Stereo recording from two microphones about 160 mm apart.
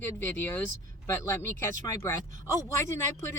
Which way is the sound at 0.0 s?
15° left (ahead or behind).